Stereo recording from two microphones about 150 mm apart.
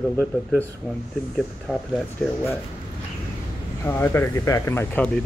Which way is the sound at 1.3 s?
5° left (ahead or behind).